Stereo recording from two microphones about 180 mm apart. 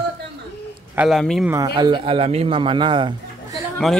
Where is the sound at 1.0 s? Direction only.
Centre (ahead or behind).